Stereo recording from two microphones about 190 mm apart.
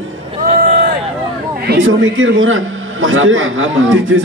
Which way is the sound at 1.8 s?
90° right.